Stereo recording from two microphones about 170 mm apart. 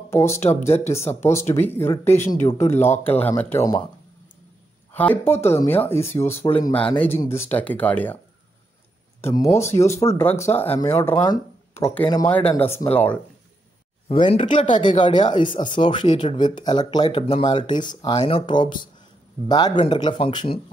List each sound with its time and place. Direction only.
0.1 s speech: 15° left (ahead or behind)
4.9 s speech: 10° left (ahead or behind)
9.2 s speech: 15° left (ahead or behind)
14.0 s speech: 30° left (ahead or behind)